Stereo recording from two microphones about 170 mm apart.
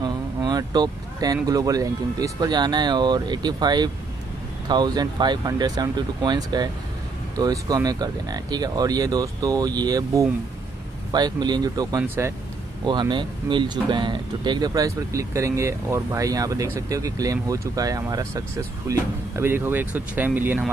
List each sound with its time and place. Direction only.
0.0 s speech: 25° right (ahead or behind)
12.8 s speech: 25° right (ahead or behind); by 20.7 s 10° right (ahead or behind)